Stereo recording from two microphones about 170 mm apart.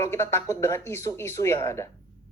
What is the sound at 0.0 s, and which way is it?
A woman's voice, 15° left (ahead or behind).